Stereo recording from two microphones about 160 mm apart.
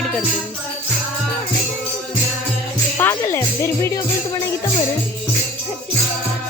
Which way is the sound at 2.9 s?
15° left (ahead or behind).